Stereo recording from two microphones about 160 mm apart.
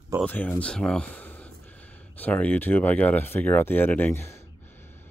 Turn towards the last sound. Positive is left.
turn(degrees=15)  # may be behind; listen again after turning